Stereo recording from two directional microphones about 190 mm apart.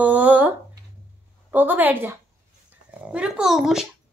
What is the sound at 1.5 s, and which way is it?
A child's voice, 10° right (ahead or behind).